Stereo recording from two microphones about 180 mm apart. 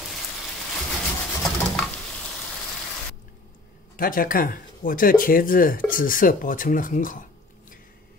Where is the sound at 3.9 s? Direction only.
50° left (ahead or behind).